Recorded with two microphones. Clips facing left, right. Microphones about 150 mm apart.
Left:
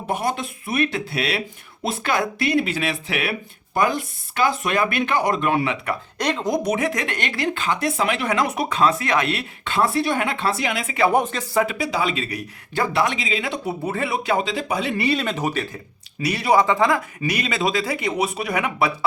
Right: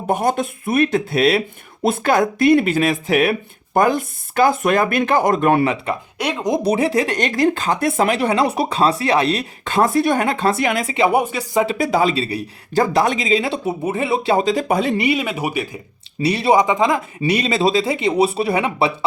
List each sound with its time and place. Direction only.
0.1 s speech: 45° right (ahead or behind)
6.1 s speech: 10° right (ahead or behind)
6.6 s speech: 30° right (ahead or behind); by 10.9 s 45° right (ahead or behind)
10.9 s speech: 15° right (ahead or behind)
11.8 s speech: 45° right (ahead or behind)
13.7 s speech: 20° right (ahead or behind)
14.4 s speech: 45° right (ahead or behind)
14.9 s speech: 15° right (ahead or behind)
16.2 s speech: 25° right (ahead or behind)
17.2 s speech: 30° right (ahead or behind)